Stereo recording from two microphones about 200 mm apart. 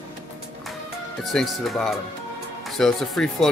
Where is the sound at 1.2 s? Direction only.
Centre (ahead or behind).